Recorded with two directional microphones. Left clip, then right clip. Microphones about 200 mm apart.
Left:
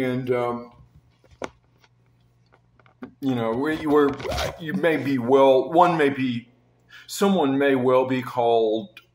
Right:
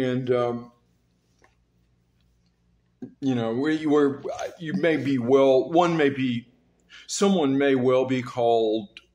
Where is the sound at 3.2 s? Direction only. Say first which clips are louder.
Left 2 dB; 5° right (ahead or behind).